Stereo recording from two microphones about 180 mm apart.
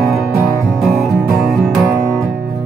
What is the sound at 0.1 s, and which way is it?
Music, 15° right (ahead or behind).